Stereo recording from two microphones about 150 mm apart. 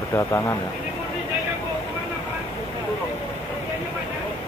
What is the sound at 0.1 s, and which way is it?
Speech, 20° left (ahead or behind).